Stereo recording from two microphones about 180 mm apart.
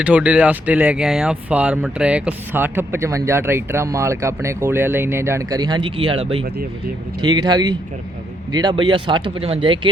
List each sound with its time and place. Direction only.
0.0 s speech: 5° right (ahead or behind); by 9.9 s 25° right (ahead or behind)